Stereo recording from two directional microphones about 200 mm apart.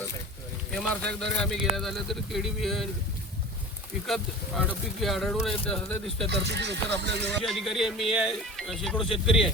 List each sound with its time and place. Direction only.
0.7 s speech: 5° left (ahead or behind)
4.0 s speech: centre (ahead or behind)
6.2 s speech: 60° right (ahead or behind)
7.4 s speech: centre (ahead or behind)